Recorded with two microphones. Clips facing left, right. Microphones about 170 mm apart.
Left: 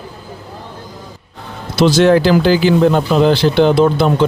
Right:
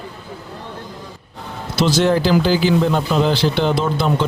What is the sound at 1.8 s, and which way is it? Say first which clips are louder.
Speech: left 6 dB; 70° left (ahead or behind).